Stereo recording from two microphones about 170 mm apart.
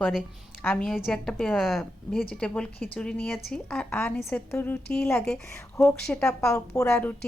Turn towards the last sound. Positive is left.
turn(degrees=10)  # may be behind; listen again after turning